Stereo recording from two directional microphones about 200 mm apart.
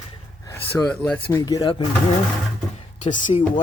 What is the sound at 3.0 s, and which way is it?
Speech, 40° left (ahead or behind).